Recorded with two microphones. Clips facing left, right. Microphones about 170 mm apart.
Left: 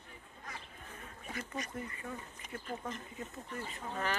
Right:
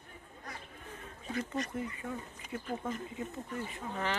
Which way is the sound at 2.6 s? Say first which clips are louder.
Right 4 dB; 5° right (ahead or behind).